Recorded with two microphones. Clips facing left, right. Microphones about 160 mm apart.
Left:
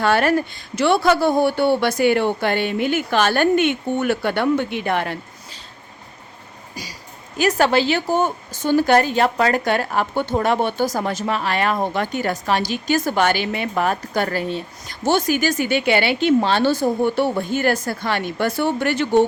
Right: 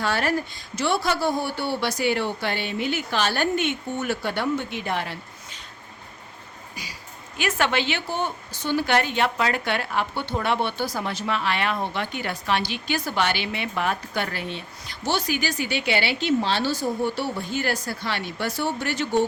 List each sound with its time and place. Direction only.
0.0 s speech: 60° left (ahead or behind)
7.3 s a woman's voice: 40° left (ahead or behind); by 19.2 s 60° left (ahead or behind)